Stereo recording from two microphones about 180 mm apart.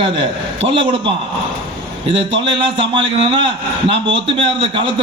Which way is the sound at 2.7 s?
30° right (ahead or behind).